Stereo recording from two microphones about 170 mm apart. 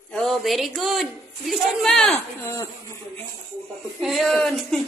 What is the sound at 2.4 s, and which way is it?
Speech, 15° left (ahead or behind).